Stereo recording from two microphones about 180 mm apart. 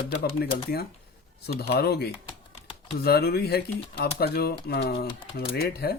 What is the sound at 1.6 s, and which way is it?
Speech, 65° left (ahead or behind).